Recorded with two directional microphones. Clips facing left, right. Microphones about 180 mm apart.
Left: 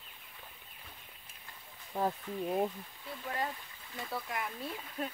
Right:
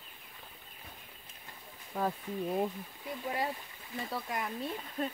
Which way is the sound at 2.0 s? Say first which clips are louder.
Even; 10° left (ahead or behind).